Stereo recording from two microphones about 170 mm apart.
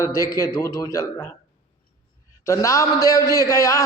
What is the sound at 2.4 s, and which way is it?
A man's voice, 20° left (ahead or behind).